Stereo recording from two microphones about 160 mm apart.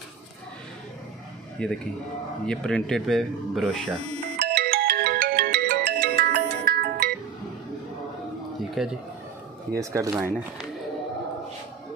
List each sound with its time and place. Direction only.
1.6 s speech: 5° left (ahead or behind)
4.4 s ringtone: 90° right
8.8 s speech: centre (ahead or behind)
9.8 s speech: 20° right (ahead or behind)